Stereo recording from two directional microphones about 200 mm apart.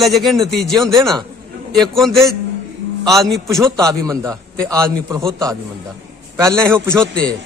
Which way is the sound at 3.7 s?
15° right (ahead or behind).